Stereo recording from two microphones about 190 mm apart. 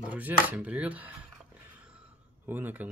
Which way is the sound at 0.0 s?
5° right (ahead or behind).